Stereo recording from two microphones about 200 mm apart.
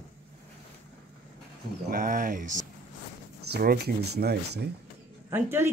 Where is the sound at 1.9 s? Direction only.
40° right (ahead or behind).